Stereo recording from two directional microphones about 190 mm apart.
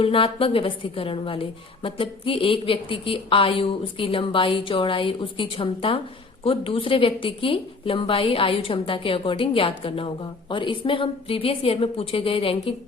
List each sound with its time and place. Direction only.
0.0 s a woman's voice: 30° left (ahead or behind)